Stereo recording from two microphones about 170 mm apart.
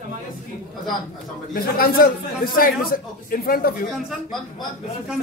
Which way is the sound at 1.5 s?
60° left (ahead or behind).